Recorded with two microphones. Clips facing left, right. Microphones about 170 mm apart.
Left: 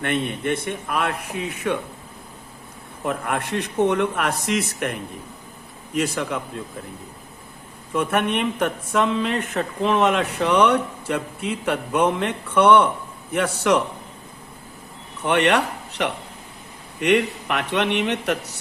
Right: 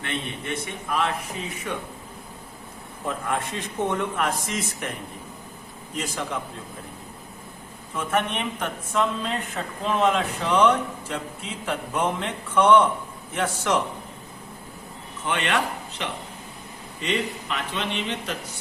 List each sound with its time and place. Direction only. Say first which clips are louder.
0.0 s a man's voice: left 8 dB; 55° left (ahead or behind)
3.1 s speech: left 3 dB; 65° left (ahead or behind)
7.9 s speech: left 4 dB; 60° left (ahead or behind)
15.2 s a man's voice: left 7 dB; 70° left (ahead or behind)